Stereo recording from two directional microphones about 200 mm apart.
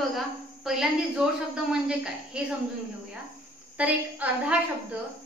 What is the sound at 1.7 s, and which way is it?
Speech, 5° right (ahead or behind).